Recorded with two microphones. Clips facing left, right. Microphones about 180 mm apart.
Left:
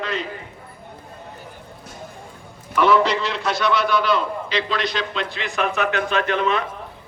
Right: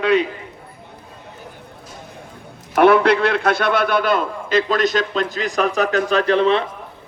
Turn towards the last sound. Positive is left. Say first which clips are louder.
# right 5 dB
turn(degrees=-30)  # may be behind; listen again after turning